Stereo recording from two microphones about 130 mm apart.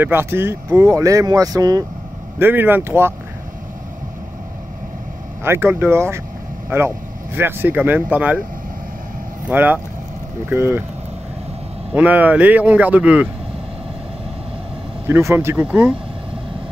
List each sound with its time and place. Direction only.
0.0 s speech: 15° right (ahead or behind)
2.3 s speech: 15° right (ahead or behind)
5.4 s speech: 20° right (ahead or behind)
9.5 s speech: 15° right (ahead or behind)
11.9 s speech: 10° right (ahead or behind)
15.0 s speech: 20° right (ahead or behind)